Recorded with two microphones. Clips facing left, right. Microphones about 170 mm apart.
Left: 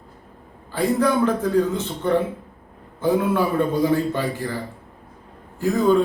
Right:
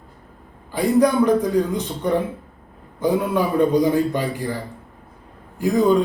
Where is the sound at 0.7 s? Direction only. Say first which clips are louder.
Right 3 dB; 15° right (ahead or behind).